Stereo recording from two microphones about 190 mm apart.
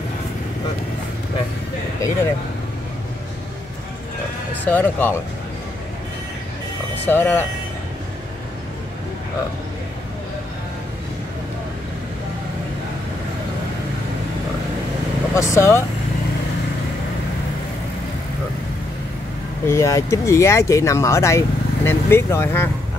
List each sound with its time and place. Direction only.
4.6 s speech: 10° left (ahead or behind)
7.1 s speech: 10° left (ahead or behind)
15.3 s speech: 15° left (ahead or behind)
19.6 s speech: 15° left (ahead or behind)